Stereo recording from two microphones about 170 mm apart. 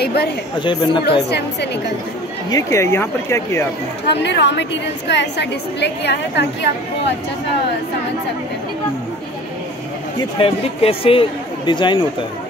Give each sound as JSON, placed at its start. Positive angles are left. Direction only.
{"t": 0.0, "sound": "speech", "side_deg": 70}
{"t": 0.6, "sound": "speech", "side_deg": 30}
{"t": 1.0, "sound": "a woman's voice", "side_deg": 75}
{"t": 2.5, "sound": "speech", "side_deg": 15}
{"t": 4.1, "sound": "a woman's voice", "side_deg": 90}
{"t": 10.4, "sound": "speech", "side_deg": 35}